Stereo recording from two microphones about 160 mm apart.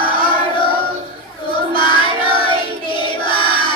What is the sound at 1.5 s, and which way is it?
Child singing, 30° left (ahead or behind).